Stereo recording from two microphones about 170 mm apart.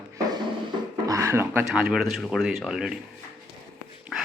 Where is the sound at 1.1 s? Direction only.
15° right (ahead or behind).